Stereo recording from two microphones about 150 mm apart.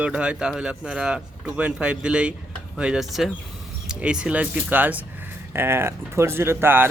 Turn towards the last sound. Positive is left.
turn(degrees=-15)  # may be behind; listen again after turning